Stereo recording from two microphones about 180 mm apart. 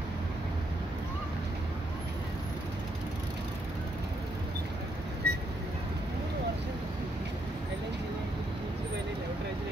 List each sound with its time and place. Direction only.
5.2 s vehicle: 65° right (ahead or behind)